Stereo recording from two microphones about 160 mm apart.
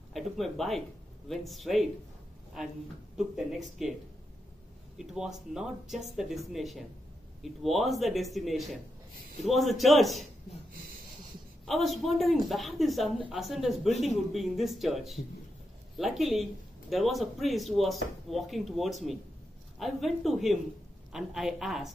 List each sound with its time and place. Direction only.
0.1 s speech: centre (ahead or behind)
4.9 s speech: 5° right (ahead or behind)
10.7 s snort: 65° right (ahead or behind)
11.6 s speech: centre (ahead or behind)